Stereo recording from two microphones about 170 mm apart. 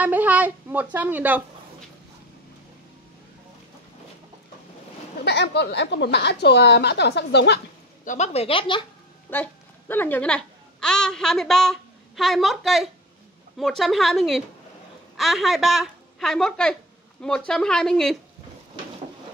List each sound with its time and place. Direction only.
0.0 s speech: 10° right (ahead or behind)
5.2 s a woman's voice: 85° left
8.0 s a woman's voice: 45° left (ahead or behind); by 8.8 s 30° left (ahead or behind)
9.3 s a child's voice: 10° left (ahead or behind)